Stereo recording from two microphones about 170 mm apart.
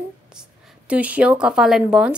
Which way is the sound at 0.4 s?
10° right (ahead or behind).